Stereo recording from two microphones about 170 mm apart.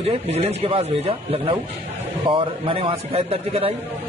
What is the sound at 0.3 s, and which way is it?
A man's voice, 40° right (ahead or behind).